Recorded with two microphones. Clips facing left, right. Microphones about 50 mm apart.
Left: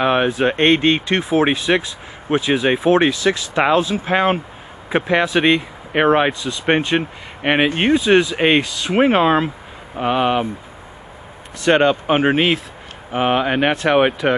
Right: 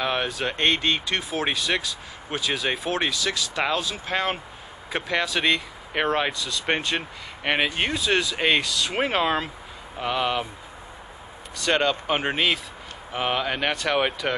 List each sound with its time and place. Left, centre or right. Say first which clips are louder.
0.0 s speech: left 10 dB; left
11.6 s speech: left 8 dB; left